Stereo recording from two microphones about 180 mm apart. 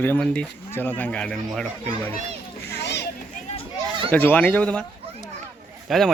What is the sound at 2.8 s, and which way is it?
Children playing, 70° left (ahead or behind).